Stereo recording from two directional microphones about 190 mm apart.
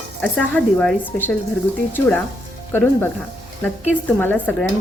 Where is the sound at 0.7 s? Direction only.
10° left (ahead or behind).